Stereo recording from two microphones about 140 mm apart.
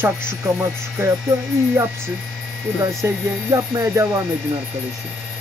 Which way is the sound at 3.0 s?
20° right (ahead or behind).